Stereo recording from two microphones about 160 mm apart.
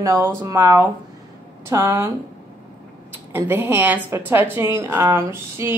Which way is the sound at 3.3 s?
15° right (ahead or behind).